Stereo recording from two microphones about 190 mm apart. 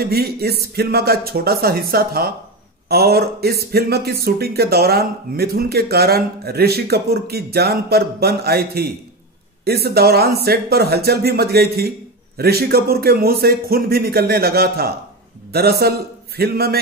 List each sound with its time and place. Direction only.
0.0 s a man's voice: 55° right (ahead or behind)